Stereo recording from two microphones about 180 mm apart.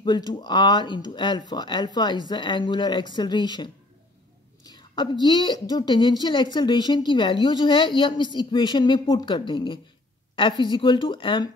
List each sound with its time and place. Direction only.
0.0 s speech: 25° left (ahead or behind)